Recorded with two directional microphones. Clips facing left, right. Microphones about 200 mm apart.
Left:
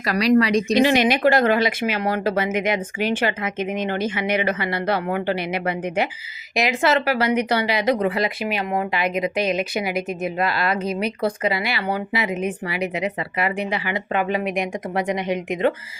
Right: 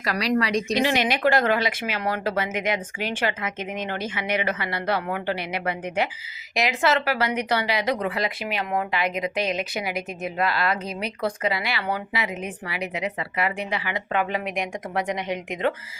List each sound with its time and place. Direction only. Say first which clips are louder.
0.0 s speech: left 6 dB; 20° left (ahead or behind)